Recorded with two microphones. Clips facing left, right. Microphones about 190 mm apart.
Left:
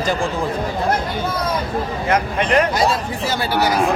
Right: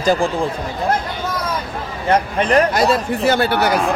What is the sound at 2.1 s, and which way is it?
Speech, 35° right (ahead or behind).